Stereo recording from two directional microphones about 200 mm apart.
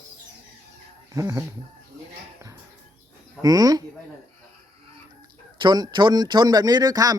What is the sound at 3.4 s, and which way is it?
Speech, 20° right (ahead or behind).